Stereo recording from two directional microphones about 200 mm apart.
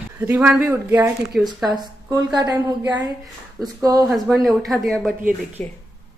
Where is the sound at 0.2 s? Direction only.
10° right (ahead or behind).